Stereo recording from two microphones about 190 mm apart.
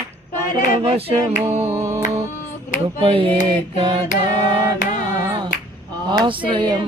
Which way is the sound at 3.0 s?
30° right (ahead or behind).